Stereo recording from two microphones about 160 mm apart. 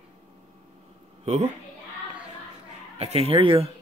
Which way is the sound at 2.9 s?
40° right (ahead or behind).